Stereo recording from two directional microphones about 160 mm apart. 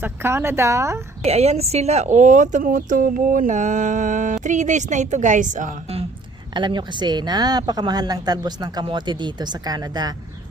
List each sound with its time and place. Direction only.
0.0 s speech: 15° right (ahead or behind)
1.2 s speech: 40° right (ahead or behind)
6.5 s speech: 30° right (ahead or behind)